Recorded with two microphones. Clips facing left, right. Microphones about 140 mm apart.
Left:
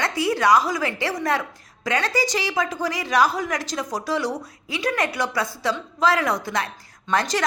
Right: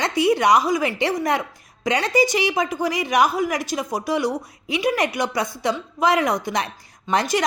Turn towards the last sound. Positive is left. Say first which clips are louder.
# right 2 dB
turn(degrees=-15)  # may be behind; listen again after turning